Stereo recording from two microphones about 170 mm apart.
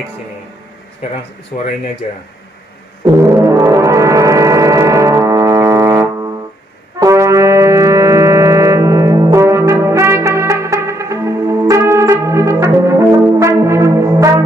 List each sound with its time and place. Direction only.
1.5 s speech: 60° left (ahead or behind)
2.0 s speech: 45° left (ahead or behind)
3.2 s foghorn: 15° right (ahead or behind)
7.0 s music: 15° right (ahead or behind)